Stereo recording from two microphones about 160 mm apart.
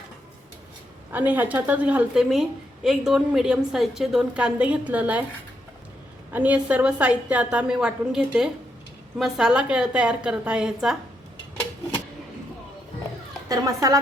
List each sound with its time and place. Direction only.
1.3 s a woman's voice: 10° right (ahead or behind)
6.3 s a woman's voice: 10° right (ahead or behind)
13.5 s speech: 20° right (ahead or behind)